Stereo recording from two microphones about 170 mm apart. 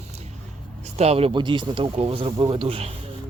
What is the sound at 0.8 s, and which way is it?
Speech, 40° right (ahead or behind).